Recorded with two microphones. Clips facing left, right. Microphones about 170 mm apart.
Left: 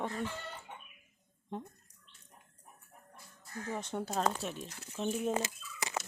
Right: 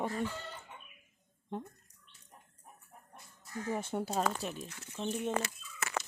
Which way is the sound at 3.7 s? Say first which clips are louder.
Right 2 dB; 10° right (ahead or behind).